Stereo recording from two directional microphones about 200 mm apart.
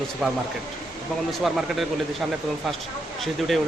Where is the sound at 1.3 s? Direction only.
Centre (ahead or behind).